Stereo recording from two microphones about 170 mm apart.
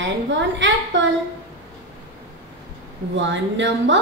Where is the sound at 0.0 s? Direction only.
90° right.